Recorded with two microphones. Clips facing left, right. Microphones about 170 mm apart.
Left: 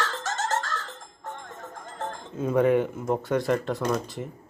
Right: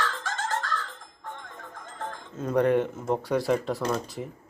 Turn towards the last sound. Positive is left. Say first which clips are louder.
# left 1 dB
turn(degrees=5)  # may be behind; listen again after turning